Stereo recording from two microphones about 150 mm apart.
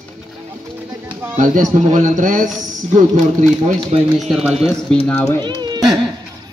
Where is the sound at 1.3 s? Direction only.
55° right (ahead or behind).